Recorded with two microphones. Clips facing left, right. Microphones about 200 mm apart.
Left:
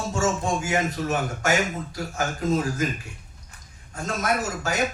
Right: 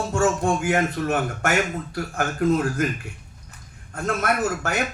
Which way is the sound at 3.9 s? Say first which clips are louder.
Right 2 dB; 60° right (ahead or behind).